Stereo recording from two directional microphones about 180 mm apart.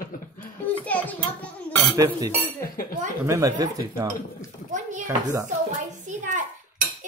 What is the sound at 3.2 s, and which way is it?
Dishes, 20° right (ahead or behind).